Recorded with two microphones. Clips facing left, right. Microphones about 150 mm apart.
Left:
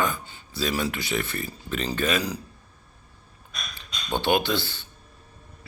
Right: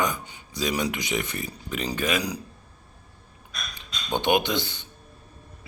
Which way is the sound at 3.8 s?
15° right (ahead or behind).